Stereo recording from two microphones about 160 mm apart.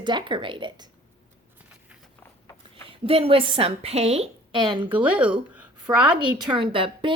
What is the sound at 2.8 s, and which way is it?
A woman's voice, 35° right (ahead or behind).